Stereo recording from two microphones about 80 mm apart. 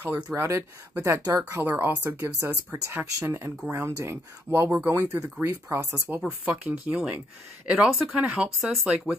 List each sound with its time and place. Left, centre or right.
0.0 s speech: right
5.8 s speech: right
6.0 s speech: right